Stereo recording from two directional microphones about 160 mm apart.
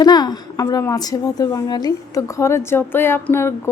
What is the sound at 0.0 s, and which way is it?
A woman's voice, 25° left (ahead or behind).